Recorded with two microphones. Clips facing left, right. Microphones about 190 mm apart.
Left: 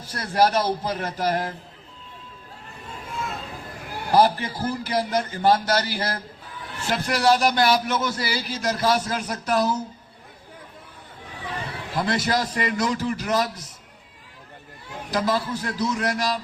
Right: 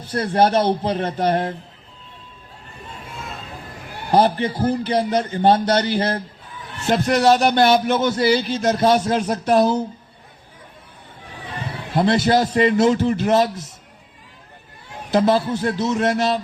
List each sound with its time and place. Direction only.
0.1 s a man's voice: 25° right (ahead or behind)
4.2 s a man's voice: 25° right (ahead or behind)
4.5 s speech: 55° right (ahead or behind)
4.9 s a man's voice: 25° right (ahead or behind)
11.9 s a man's voice: 25° right (ahead or behind)
15.1 s a man's voice: 25° right (ahead or behind)